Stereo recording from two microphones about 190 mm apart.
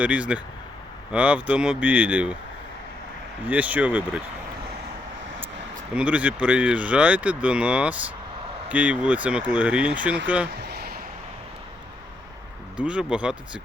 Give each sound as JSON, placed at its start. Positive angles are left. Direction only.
{"t": 0.0, "sound": "speech", "side_deg": -5}
{"t": 3.4, "sound": "speech", "side_deg": -10}
{"t": 5.9, "sound": "speech", "side_deg": -5}
{"t": 10.6, "sound": "a sound", "side_deg": -60}
{"t": 12.7, "sound": "speech", "side_deg": -5}